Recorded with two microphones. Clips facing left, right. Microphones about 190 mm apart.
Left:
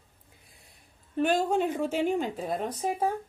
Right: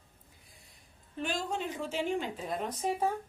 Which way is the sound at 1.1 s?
55° left (ahead or behind).